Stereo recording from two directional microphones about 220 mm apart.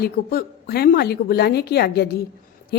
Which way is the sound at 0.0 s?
45° left (ahead or behind).